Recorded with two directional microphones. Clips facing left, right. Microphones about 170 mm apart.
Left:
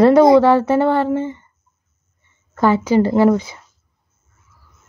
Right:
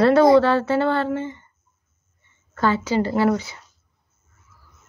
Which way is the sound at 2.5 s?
20° left (ahead or behind).